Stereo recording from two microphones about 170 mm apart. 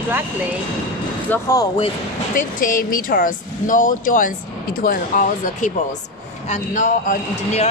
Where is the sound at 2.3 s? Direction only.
55° left (ahead or behind).